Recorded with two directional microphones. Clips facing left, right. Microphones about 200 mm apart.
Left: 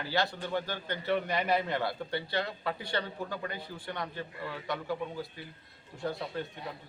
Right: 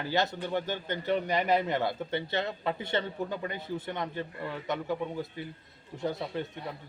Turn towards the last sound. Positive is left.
turn(degrees=-20)  # may be behind; listen again after turning